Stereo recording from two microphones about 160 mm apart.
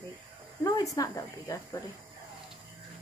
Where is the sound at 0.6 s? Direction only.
20° left (ahead or behind).